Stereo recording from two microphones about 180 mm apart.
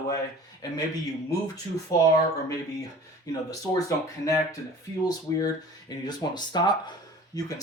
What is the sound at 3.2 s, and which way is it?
Speech, 20° left (ahead or behind).